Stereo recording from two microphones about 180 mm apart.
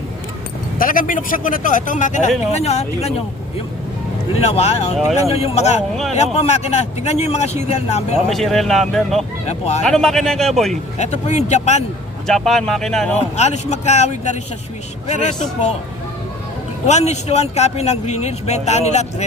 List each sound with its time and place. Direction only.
0.8 s speech: 50° left (ahead or behind)
4.4 s speech: 35° left (ahead or behind)
8.3 s speech: centre (ahead or behind)
9.5 s speech: 35° left (ahead or behind)
9.8 s speech: centre (ahead or behind)
10.9 s speech: 40° left (ahead or behind)
12.3 s speech: centre (ahead or behind)
13.3 s speech: 40° left (ahead or behind)
16.8 s speech: 40° left (ahead or behind)